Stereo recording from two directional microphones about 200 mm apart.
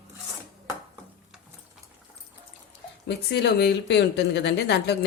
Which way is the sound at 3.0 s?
55° left (ahead or behind).